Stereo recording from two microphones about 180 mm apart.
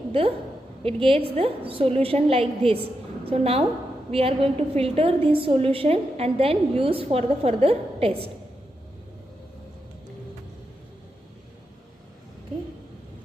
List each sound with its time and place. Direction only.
0.8 s a woman's voice: 30° right (ahead or behind)